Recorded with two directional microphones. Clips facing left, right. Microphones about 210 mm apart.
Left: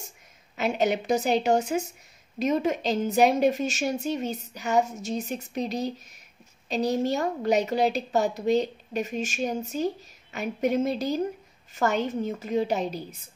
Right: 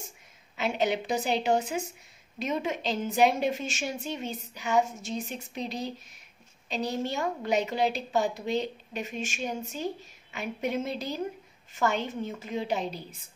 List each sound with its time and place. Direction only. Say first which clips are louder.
0.6 s a woman's voice: left 3 dB; 45° left (ahead or behind)